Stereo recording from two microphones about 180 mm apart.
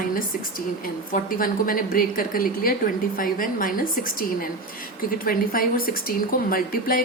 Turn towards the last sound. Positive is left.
turn(degrees=55)  # may be behind; listen again after turning